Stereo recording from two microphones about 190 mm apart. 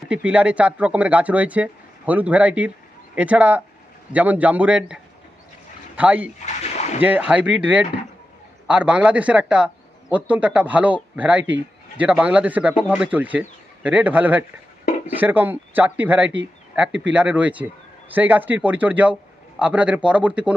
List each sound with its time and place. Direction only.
0.1 s speech: 5° right (ahead or behind)
6.4 s a sound: 35° left (ahead or behind)
7.0 s speech: 10° right (ahead or behind)